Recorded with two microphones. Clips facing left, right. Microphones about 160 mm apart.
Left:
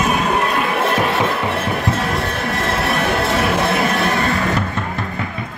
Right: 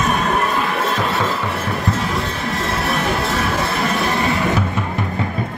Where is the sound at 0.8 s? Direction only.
65° left (ahead or behind).